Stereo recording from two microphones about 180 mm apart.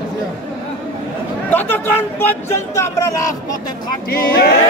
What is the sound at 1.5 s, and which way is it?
Speech, 10° left (ahead or behind).